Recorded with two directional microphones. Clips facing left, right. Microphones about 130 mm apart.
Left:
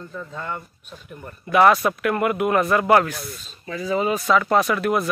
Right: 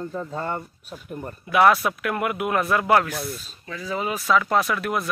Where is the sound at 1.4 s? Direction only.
5° right (ahead or behind).